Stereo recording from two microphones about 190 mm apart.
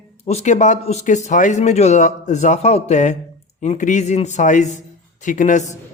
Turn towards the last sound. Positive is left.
turn(degrees=40)  # may be behind; listen again after turning